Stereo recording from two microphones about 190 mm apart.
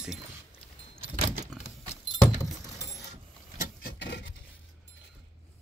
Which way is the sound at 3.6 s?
60° left (ahead or behind).